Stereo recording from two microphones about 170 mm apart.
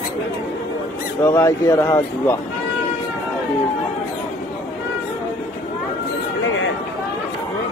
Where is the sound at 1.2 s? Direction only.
15° left (ahead or behind).